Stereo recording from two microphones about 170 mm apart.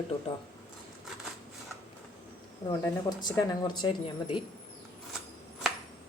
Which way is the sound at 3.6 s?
25° left (ahead or behind).